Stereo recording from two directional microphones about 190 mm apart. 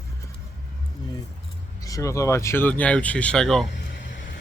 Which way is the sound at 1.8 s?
15° left (ahead or behind).